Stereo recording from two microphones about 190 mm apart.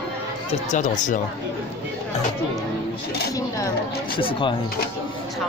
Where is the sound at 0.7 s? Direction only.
40° left (ahead or behind).